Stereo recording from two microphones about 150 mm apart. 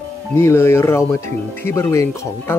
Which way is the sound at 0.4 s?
15° left (ahead or behind).